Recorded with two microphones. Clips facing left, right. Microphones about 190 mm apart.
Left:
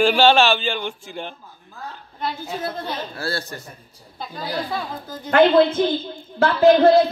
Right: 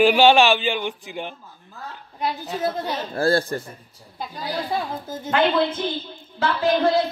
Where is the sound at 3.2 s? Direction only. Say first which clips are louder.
Right 8 dB; 50° right (ahead or behind).